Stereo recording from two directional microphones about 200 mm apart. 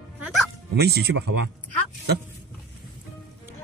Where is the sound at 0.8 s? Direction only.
55° right (ahead or behind).